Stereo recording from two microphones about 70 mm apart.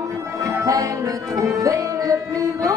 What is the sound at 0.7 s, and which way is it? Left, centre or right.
Music, right.